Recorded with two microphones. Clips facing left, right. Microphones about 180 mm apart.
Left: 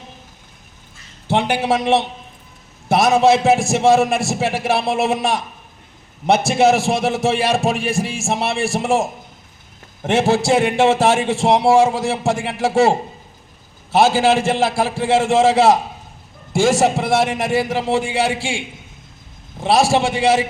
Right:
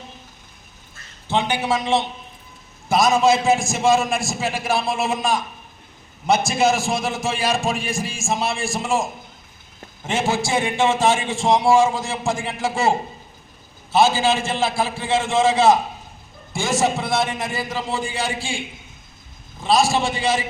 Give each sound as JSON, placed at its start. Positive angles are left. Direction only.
{"t": 1.3, "sound": "a man's voice", "side_deg": 70}
{"t": 13.9, "sound": "a man's voice", "side_deg": 75}
{"t": 19.6, "sound": "a man's voice", "side_deg": 75}